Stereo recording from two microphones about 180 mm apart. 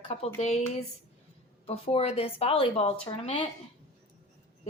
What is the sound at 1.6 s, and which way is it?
A woman's voice, 30° left (ahead or behind).